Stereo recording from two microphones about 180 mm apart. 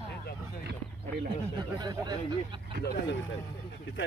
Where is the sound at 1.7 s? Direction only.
20° right (ahead or behind).